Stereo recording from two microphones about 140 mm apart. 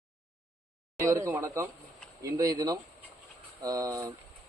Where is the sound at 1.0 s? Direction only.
20° right (ahead or behind).